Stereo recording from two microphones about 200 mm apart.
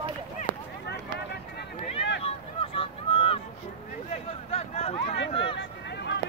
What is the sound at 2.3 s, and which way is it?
Vehicle, 25° left (ahead or behind).